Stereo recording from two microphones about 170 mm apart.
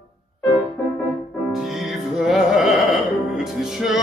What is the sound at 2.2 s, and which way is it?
Music, 5° right (ahead or behind).